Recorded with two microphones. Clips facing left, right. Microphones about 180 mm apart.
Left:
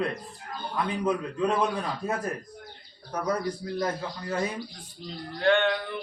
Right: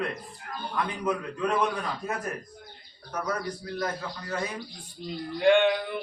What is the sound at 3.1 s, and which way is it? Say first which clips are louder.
A man's voice: left 3 dB; 30° left (ahead or behind).